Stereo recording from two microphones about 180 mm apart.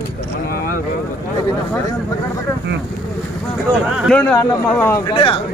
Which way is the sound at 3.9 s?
5° right (ahead or behind).